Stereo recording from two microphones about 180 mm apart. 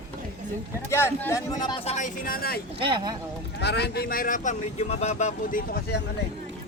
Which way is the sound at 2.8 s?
25° right (ahead or behind).